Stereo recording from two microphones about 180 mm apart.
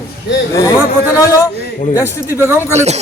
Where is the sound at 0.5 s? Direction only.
15° left (ahead or behind).